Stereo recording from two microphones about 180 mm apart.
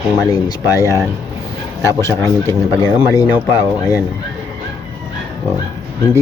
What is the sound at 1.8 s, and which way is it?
Speech, 15° left (ahead or behind).